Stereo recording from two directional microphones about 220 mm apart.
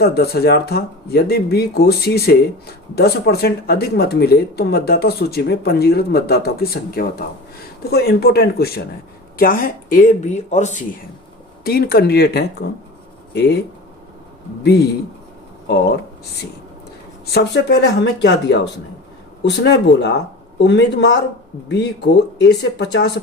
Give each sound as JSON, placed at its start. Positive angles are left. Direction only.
{"t": 0.0, "sound": "speech", "side_deg": 45}
{"t": 11.6, "sound": "speech", "side_deg": 45}
{"t": 15.6, "sound": "speech", "side_deg": 50}